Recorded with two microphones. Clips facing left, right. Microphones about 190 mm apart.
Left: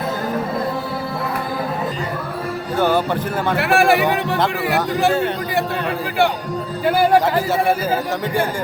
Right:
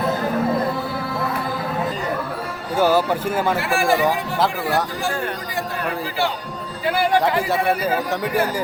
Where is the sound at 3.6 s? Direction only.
65° left (ahead or behind).